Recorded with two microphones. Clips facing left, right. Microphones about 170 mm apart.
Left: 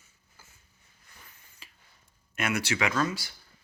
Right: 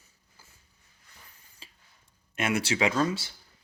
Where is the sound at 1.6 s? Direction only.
30° right (ahead or behind).